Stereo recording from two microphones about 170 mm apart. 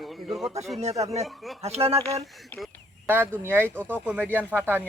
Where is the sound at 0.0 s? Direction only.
Centre (ahead or behind).